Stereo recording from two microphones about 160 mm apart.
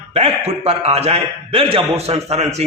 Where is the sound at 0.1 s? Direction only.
40° right (ahead or behind).